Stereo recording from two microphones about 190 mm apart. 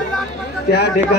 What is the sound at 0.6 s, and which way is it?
Speech, 60° left (ahead or behind).